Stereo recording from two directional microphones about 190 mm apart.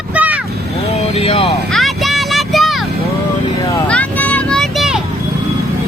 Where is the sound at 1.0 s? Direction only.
35° left (ahead or behind).